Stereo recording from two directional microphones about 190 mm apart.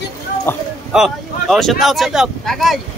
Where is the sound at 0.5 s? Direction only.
10° left (ahead or behind).